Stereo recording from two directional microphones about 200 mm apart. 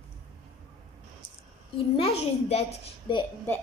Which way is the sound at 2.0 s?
30° left (ahead or behind).